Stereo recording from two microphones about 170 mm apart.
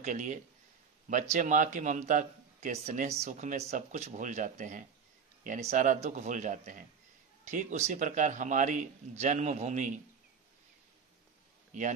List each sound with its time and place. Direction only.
0.0 s a man's voice: 50° right (ahead or behind)
11.7 s a man's voice: 45° right (ahead or behind)